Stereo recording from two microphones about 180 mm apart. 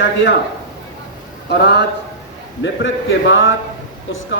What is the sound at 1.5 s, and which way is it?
Speech, 65° left (ahead or behind).